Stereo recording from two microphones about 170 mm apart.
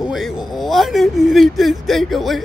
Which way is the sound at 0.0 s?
Centre (ahead or behind).